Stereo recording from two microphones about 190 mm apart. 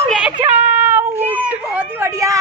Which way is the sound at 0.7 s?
10° right (ahead or behind).